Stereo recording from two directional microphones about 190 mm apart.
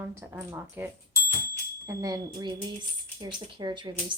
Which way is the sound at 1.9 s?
20° right (ahead or behind).